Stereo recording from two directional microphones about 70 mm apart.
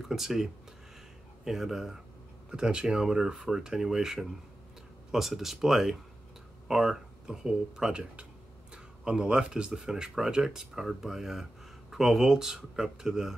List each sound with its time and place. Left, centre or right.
0.0 s speech: centre